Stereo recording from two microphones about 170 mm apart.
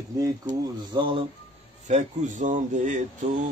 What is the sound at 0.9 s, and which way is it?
Speech, 30° right (ahead or behind).